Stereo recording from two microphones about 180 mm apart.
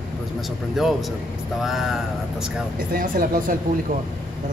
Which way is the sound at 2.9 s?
50° right (ahead or behind).